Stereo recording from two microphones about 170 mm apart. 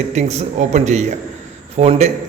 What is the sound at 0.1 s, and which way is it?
A man's voice, 40° right (ahead or behind).